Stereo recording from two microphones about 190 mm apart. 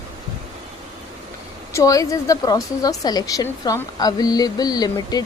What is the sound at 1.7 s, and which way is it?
A woman's voice, 15° left (ahead or behind).